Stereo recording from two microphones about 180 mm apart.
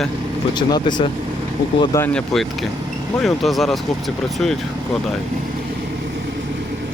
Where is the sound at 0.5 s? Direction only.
25° left (ahead or behind).